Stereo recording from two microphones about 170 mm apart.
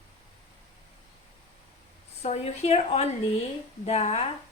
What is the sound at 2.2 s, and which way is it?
A woman's voice, 40° left (ahead or behind).